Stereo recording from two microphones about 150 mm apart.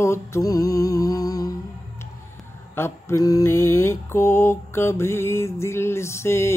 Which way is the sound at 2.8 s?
20° left (ahead or behind).